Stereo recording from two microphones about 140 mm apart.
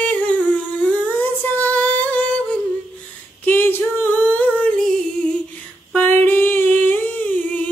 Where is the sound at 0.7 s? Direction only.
10° left (ahead or behind).